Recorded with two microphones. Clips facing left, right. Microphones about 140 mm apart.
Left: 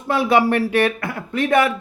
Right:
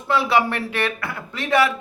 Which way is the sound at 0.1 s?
50° left (ahead or behind).